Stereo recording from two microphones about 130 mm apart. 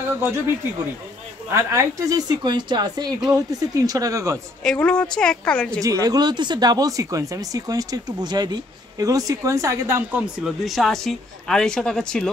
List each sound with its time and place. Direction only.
1.5 s a woman's voice: 20° right (ahead or behind)
4.6 s speech: 10° left (ahead or behind)
5.8 s speech: 25° right (ahead or behind)
10.4 s speech: centre (ahead or behind)